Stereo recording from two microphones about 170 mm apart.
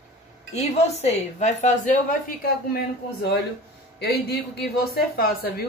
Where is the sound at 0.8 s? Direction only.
40° left (ahead or behind); by 3.3 s 60° left (ahead or behind).